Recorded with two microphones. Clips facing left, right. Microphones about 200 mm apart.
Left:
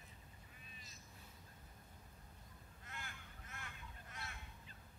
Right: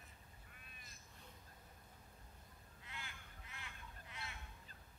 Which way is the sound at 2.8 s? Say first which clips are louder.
Left 1 dB; 45° left (ahead or behind).